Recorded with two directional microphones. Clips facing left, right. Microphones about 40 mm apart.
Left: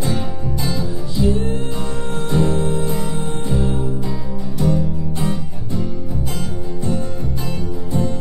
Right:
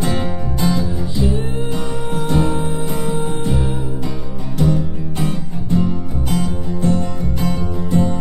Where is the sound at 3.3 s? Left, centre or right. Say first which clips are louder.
Right 2 dB; right.